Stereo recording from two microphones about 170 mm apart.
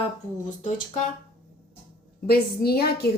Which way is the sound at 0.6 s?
50° left (ahead or behind).